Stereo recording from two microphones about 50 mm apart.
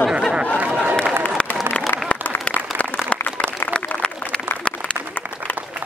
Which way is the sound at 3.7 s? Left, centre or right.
Centre.